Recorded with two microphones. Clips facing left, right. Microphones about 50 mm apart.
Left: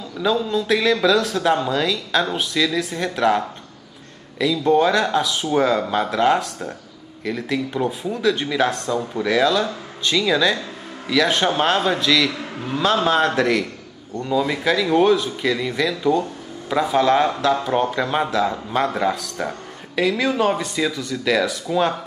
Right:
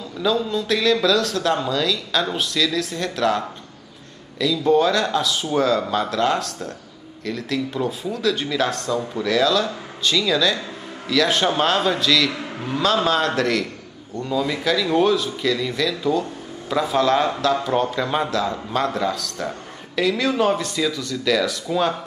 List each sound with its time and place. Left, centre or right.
0.4 s speech: centre
0.7 s a man's voice: centre
16.1 s a sound: centre
16.8 s a man's voice: centre